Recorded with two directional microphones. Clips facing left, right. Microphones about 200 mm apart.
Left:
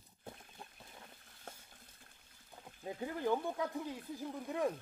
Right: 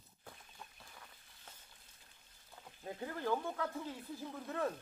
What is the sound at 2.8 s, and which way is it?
Speech, 15° left (ahead or behind).